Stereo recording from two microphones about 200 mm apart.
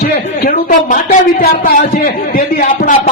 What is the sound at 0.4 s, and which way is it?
A man's voice, 40° left (ahead or behind).